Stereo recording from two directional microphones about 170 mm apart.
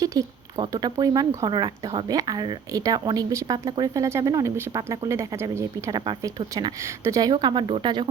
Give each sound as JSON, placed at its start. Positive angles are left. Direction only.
{"t": 0.0, "sound": "a woman's voice", "side_deg": -20}